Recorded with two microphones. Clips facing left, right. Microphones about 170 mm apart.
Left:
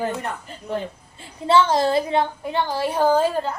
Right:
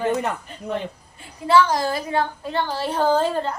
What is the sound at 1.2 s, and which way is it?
A woman's voice, 25° left (ahead or behind).